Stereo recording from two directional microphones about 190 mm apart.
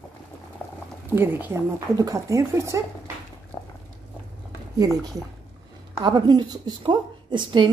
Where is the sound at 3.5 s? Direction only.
20° left (ahead or behind).